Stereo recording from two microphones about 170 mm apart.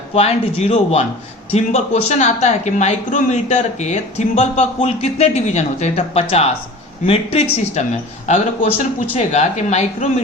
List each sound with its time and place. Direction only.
0.1 s speech: 35° left (ahead or behind)